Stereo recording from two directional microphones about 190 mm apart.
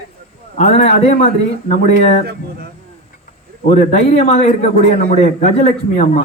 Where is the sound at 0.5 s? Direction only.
35° left (ahead or behind).